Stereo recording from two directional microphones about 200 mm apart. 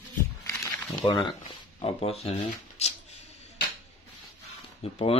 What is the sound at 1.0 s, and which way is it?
Speech, 20° left (ahead or behind).